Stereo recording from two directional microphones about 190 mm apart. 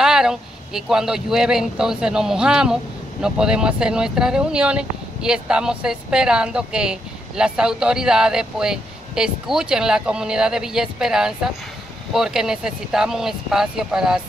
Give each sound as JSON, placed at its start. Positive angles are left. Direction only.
{"t": 0.0, "sound": "speech", "side_deg": -5}